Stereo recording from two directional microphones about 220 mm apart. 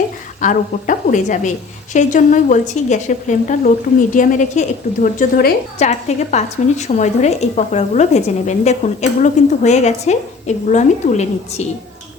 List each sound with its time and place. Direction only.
0.4 s a woman's voice: 35° left (ahead or behind)